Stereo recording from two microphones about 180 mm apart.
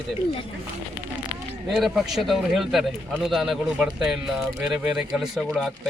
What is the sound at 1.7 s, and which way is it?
A man's voice, centre (ahead or behind).